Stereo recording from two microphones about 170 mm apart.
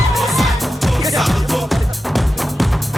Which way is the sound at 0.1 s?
Centre (ahead or behind).